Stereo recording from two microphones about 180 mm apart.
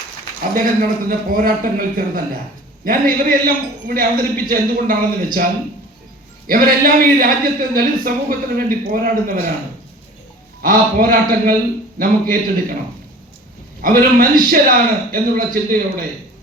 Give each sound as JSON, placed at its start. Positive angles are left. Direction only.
{"t": 0.5, "sound": "speech", "side_deg": -50}
{"t": 6.5, "sound": "speech", "side_deg": -55}
{"t": 10.6, "sound": "speech", "side_deg": -50}
{"t": 13.8, "sound": "speech", "side_deg": -50}